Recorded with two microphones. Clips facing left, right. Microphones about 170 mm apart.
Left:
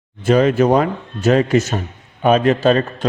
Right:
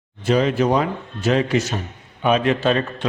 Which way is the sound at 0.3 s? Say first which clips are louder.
Left 5 dB; 50° left (ahead or behind).